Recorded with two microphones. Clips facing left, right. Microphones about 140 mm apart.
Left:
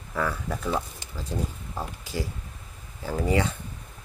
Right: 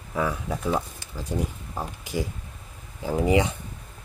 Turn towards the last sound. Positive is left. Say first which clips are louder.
# right 3 dB
turn(degrees=-15)  # may be behind; listen again after turning